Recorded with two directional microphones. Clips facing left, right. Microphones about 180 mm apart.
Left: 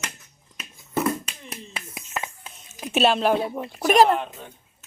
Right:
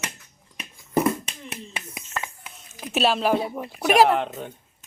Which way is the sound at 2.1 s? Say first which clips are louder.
Left 1 dB; 20° left (ahead or behind).